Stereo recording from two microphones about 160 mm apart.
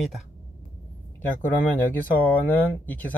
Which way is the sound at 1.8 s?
10° left (ahead or behind).